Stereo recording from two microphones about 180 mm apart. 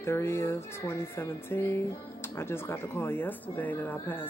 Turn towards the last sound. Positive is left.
turn(degrees=10)  # may be behind; listen again after turning